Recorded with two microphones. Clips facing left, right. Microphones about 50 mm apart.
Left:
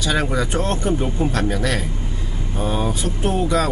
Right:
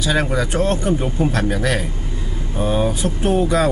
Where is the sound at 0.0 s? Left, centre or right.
Centre.